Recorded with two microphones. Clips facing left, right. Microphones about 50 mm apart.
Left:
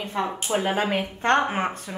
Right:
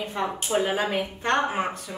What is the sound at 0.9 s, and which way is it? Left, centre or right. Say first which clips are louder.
Speech: left 3 dB; left.